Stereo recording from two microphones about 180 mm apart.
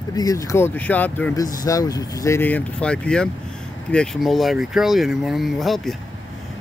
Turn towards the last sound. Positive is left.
turn(degrees=0)  # may be behind; listen again after turning